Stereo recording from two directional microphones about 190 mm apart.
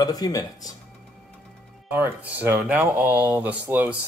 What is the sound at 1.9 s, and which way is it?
Speech, 10° right (ahead or behind).